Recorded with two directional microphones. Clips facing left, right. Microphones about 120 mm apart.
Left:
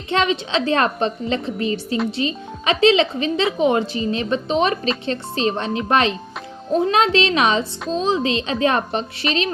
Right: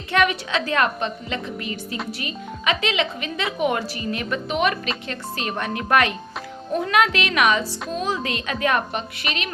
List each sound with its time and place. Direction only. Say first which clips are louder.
0.1 s speech: left 2 dB; 25° left (ahead or behind)